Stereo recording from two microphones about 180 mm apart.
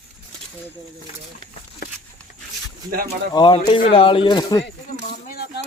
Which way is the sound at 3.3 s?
25° left (ahead or behind).